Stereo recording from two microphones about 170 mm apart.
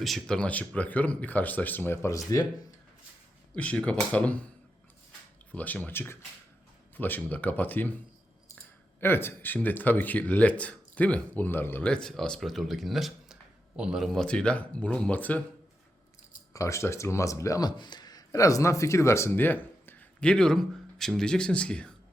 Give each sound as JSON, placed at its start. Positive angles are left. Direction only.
{"t": 0.0, "sound": "speech", "side_deg": 0}
{"t": 3.5, "sound": "speech", "side_deg": 5}
{"t": 5.5, "sound": "speech", "side_deg": 10}
{"t": 16.5, "sound": "speech", "side_deg": 20}